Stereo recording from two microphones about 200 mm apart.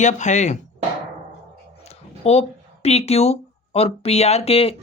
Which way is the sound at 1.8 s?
30° left (ahead or behind).